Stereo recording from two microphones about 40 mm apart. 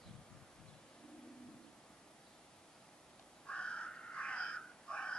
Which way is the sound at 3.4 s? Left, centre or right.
Left.